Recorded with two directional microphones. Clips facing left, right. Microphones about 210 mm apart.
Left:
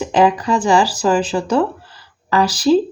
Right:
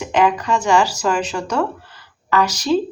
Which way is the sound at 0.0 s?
35° left (ahead or behind).